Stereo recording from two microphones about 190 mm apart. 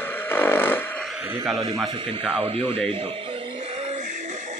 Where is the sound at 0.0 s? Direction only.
10° left (ahead or behind).